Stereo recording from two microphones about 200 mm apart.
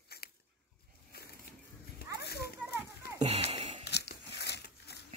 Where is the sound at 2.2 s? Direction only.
55° left (ahead or behind).